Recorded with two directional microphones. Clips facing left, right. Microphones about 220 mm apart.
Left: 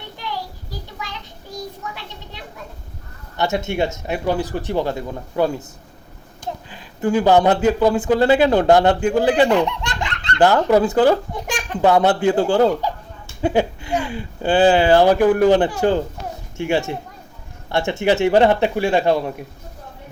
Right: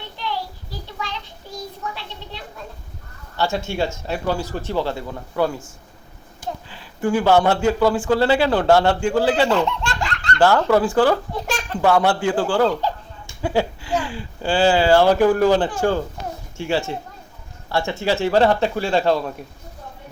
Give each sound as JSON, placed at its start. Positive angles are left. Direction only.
{"t": 3.3, "sound": "speech", "side_deg": 20}
{"t": 6.7, "sound": "speech", "side_deg": 20}